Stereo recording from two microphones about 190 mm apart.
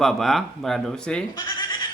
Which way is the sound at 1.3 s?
20° left (ahead or behind).